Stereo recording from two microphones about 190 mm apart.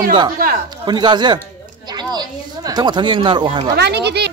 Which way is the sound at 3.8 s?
60° right (ahead or behind).